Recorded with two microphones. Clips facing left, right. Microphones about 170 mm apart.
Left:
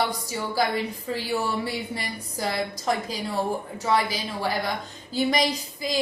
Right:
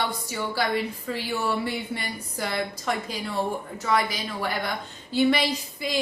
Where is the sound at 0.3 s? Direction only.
35° left (ahead or behind).